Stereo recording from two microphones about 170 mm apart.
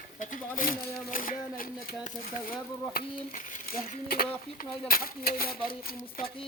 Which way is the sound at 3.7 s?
60° left (ahead or behind).